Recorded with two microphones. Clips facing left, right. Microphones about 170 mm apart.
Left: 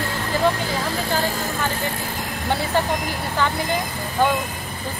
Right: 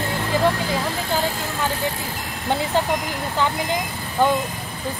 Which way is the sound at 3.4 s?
15° right (ahead or behind).